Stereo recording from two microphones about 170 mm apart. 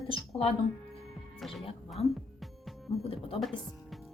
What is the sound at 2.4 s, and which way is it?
Music, centre (ahead or behind).